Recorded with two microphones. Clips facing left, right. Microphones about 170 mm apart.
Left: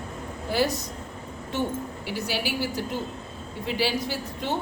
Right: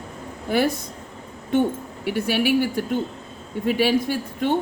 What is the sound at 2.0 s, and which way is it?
A woman's voice, 55° right (ahead or behind).